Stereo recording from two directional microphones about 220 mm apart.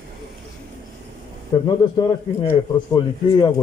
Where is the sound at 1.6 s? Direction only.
20° left (ahead or behind).